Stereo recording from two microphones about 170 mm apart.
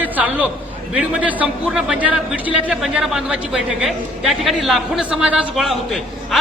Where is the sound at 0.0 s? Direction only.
10° right (ahead or behind).